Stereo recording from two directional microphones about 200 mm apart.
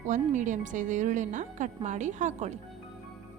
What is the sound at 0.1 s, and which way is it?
Speech, 40° right (ahead or behind).